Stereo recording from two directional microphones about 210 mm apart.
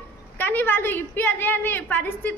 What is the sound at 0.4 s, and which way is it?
A woman's voice, 10° left (ahead or behind).